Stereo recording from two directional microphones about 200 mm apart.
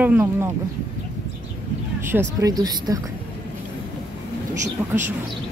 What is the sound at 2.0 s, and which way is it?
Speech, 15° right (ahead or behind).